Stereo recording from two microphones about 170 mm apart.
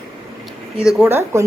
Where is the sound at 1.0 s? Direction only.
15° right (ahead or behind).